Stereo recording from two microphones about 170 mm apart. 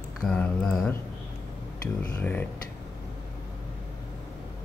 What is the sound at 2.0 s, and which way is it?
Speech, 10° left (ahead or behind).